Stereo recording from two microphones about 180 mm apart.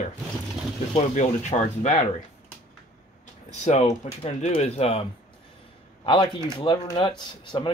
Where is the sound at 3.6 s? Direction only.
40° left (ahead or behind).